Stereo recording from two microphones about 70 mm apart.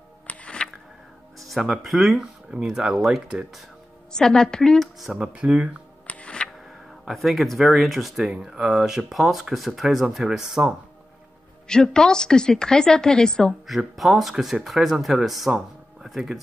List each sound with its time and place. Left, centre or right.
0.3 s music: centre
1.4 s speech: centre
4.1 s a woman's voice: centre
4.9 s speech: centre
6.0 s music: centre
7.1 s speech: centre
11.6 s a woman's voice: centre
13.7 s speech: centre